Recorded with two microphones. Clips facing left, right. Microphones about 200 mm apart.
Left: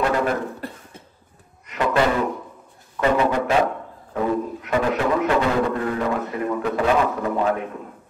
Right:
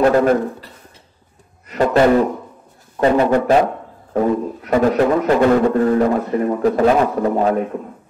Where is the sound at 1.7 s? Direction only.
40° right (ahead or behind).